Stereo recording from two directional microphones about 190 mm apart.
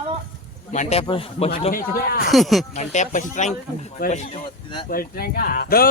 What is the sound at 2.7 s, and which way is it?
Speech, 40° left (ahead or behind).